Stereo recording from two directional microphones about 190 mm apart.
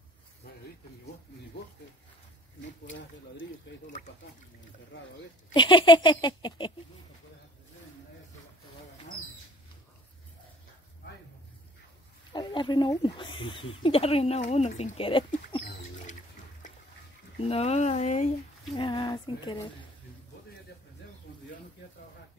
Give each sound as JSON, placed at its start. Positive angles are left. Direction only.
{"t": 0.4, "sound": "a sound", "side_deg": 55}
{"t": 3.7, "sound": "speech", "side_deg": 70}
{"t": 5.5, "sound": "speech", "side_deg": 25}
{"t": 12.3, "sound": "speech", "side_deg": 25}
{"t": 17.5, "sound": "speech", "side_deg": 35}
{"t": 18.8, "sound": "speech", "side_deg": 25}